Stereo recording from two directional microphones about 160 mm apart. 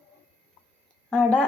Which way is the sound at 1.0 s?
5° left (ahead or behind).